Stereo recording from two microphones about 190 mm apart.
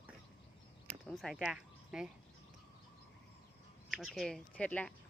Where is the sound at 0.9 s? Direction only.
Centre (ahead or behind).